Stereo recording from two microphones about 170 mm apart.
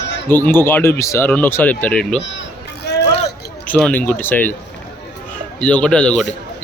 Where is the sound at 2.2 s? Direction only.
90° left.